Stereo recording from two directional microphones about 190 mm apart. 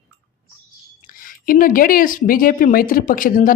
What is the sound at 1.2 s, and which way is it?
Speech, 45° left (ahead or behind).